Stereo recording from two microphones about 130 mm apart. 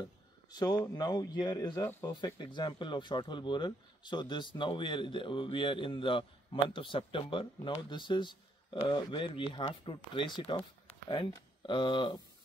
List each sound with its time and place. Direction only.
0.0 s speech: 30° left (ahead or behind)